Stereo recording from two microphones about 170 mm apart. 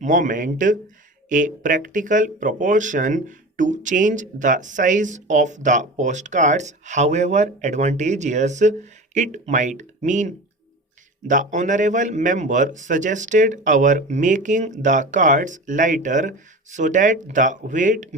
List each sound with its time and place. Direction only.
0.0 s speech: 50° right (ahead or behind)